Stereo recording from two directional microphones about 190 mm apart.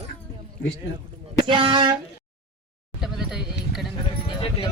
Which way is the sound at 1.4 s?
25° right (ahead or behind).